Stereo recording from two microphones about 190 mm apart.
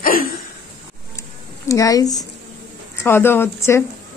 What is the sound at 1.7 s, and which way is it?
A man's voice, 15° left (ahead or behind).